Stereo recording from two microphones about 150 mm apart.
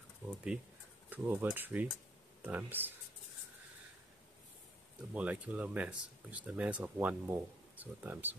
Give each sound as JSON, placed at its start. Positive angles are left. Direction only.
{"t": 0.3, "sound": "speech", "side_deg": -5}
{"t": 5.1, "sound": "speech", "side_deg": -10}